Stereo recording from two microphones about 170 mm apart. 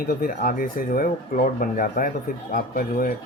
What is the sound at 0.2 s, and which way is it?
Speech, 55° left (ahead or behind).